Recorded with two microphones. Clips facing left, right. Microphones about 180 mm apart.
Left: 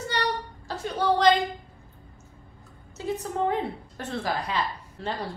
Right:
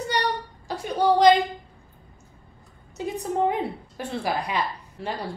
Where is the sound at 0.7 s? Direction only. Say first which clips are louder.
Right 4 dB; 15° right (ahead or behind).